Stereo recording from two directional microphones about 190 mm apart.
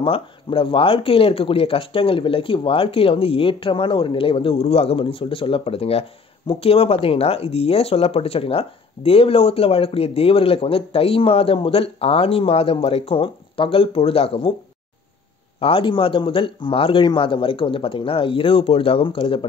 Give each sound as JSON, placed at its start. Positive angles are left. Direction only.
{"t": 0.0, "sound": "speech", "side_deg": 30}
{"t": 15.6, "sound": "speech", "side_deg": 25}